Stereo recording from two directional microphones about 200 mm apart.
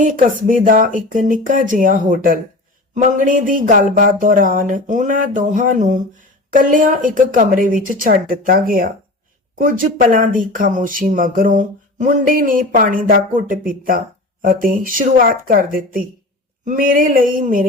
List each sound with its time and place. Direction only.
0.0 s speech: 40° right (ahead or behind)